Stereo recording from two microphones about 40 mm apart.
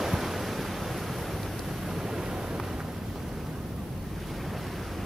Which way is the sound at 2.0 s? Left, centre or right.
Centre.